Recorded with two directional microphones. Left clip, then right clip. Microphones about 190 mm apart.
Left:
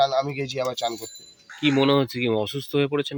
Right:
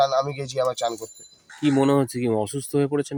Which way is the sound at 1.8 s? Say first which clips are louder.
Even; 25° right (ahead or behind).